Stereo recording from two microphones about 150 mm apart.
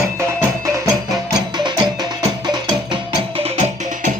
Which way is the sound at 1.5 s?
30° right (ahead or behind).